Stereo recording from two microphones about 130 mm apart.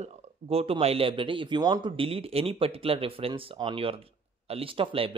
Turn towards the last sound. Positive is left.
turn(degrees=-45)  # may be behind; listen again after turning